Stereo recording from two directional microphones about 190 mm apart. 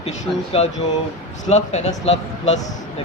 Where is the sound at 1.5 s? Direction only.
40° left (ahead or behind).